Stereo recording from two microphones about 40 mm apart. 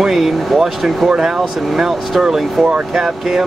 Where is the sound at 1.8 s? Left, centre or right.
Centre.